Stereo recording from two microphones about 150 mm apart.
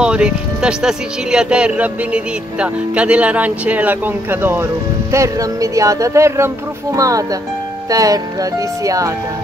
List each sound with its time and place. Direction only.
0.0 s speech: 5° right (ahead or behind); by 9.1 s 20° right (ahead or behind)